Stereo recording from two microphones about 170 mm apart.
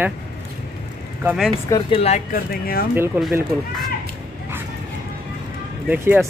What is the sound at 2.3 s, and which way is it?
Speech, 60° left (ahead or behind).